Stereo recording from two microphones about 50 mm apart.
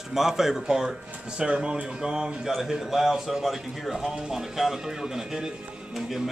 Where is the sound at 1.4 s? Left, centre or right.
Centre.